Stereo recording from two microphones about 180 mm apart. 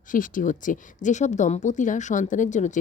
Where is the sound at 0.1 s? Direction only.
45° left (ahead or behind).